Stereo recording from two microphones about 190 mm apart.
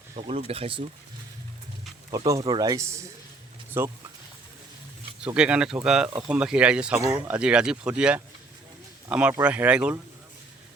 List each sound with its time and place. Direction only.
0.3 s speech: 30° right (ahead or behind)
2.1 s speech: 15° right (ahead or behind)
5.2 s speech: 5° right (ahead or behind)
7.0 s speech: 15° right (ahead or behind)
7.3 s speech: 5° right (ahead or behind)